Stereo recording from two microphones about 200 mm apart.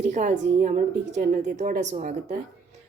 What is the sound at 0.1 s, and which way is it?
A woman's voice, 35° right (ahead or behind).